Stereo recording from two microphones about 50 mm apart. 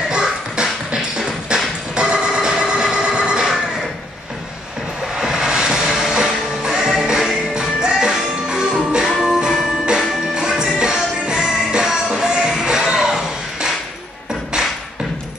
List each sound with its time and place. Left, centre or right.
0.6 s beatboxing: centre
1.1 s music: centre
5.2 s music: centre
7.5 s music: centre